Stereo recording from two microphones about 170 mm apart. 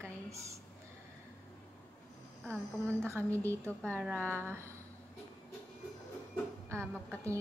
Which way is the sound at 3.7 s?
5° left (ahead or behind).